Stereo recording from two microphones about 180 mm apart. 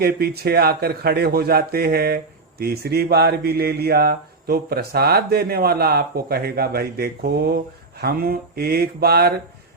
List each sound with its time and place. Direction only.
0.0 s a man's voice: 60° right (ahead or behind)